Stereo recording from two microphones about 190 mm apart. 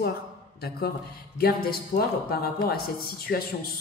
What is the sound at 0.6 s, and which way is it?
Speech, 55° left (ahead or behind).